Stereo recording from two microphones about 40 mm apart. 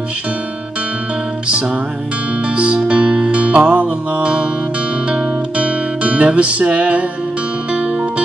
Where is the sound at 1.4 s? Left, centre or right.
Right.